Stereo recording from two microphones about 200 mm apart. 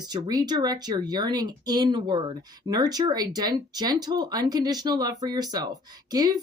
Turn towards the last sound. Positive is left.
turn(degrees=-20)  # may be behind; listen again after turning